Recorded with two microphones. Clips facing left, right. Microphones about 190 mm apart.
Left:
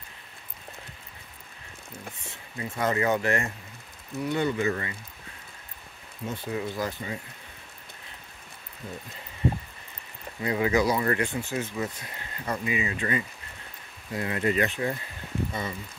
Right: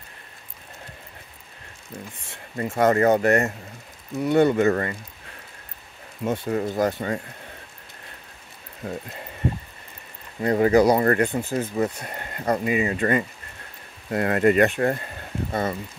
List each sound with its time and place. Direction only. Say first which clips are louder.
2.5 s speech: right 8 dB; 50° right (ahead or behind)
4.2 s speech: right 8 dB; 55° right (ahead or behind)
6.5 s speech: right 7 dB; 50° right (ahead or behind)
8.8 s speech: right 8 dB; 55° right (ahead or behind)
10.4 s speech: right 7 dB; 45° right (ahead or behind)
12.0 s speech: right 7 dB; 55° right (ahead or behind)
14.1 s speech: right 8 dB; 60° right (ahead or behind)